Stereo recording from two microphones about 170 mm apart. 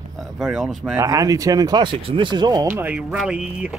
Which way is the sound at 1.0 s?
20° right (ahead or behind).